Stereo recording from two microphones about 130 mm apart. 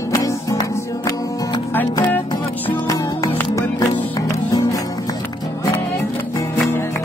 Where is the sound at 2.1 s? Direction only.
15° left (ahead or behind).